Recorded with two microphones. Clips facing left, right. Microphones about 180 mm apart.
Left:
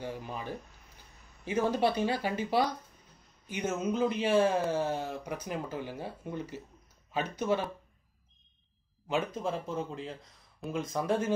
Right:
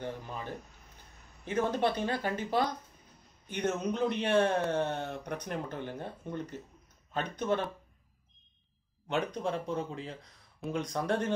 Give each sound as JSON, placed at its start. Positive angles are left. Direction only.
{"t": 0.0, "sound": "speech", "side_deg": 10}
{"t": 9.0, "sound": "speech", "side_deg": 5}